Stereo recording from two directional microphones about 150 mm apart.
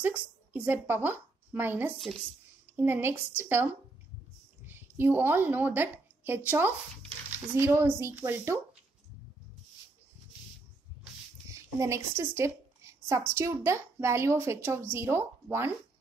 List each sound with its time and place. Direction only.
0.0 s a woman's voice: 10° right (ahead or behind)
11.8 s a woman's voice: 20° right (ahead or behind)